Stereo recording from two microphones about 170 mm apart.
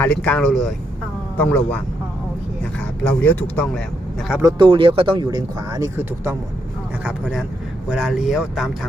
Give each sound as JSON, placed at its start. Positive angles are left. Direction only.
{"t": 0.0, "sound": "speech", "side_deg": 10}
{"t": 3.0, "sound": "speech", "side_deg": 10}
{"t": 4.4, "sound": "speech", "side_deg": -30}
{"t": 7.0, "sound": "speech", "side_deg": -5}